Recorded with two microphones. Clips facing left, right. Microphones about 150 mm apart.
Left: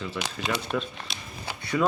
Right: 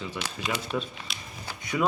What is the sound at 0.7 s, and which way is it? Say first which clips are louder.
Speech: left 1 dB; 55° left (ahead or behind).